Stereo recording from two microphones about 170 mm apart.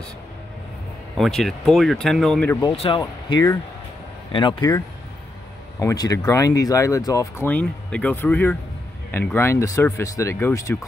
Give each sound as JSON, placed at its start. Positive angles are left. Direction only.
{"t": 1.1, "sound": "speech", "side_deg": 0}
{"t": 2.7, "sound": "speech", "side_deg": 35}
{"t": 3.0, "sound": "speech", "side_deg": 25}